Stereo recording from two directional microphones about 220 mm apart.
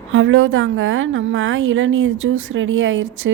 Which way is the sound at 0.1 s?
60° right (ahead or behind).